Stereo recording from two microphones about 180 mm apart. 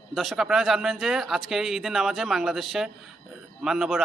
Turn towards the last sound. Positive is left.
turn(degrees=0)  # may be behind; listen again after turning